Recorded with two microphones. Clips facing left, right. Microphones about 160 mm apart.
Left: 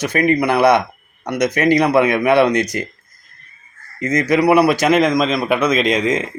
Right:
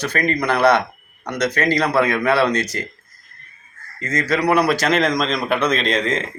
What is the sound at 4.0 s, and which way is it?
A man's voice, 15° left (ahead or behind).